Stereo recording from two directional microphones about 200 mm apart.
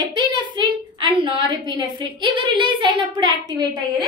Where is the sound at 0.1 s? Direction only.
25° right (ahead or behind).